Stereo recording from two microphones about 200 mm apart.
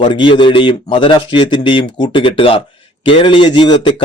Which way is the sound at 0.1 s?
25° left (ahead or behind).